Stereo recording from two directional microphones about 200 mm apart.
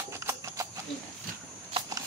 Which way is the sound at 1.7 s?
30° right (ahead or behind).